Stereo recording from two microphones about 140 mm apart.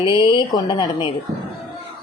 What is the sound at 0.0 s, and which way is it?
A woman's voice, 35° left (ahead or behind).